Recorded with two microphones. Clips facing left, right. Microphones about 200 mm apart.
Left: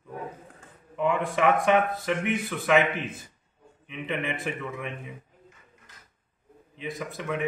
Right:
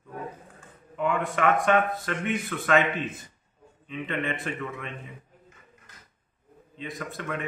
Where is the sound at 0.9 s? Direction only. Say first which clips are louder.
Left 1 dB; 15° left (ahead or behind).